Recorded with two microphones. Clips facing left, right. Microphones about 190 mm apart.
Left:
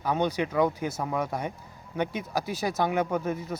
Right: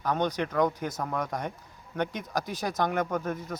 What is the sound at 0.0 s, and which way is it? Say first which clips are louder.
Speech: left 1 dB; 10° left (ahead or behind).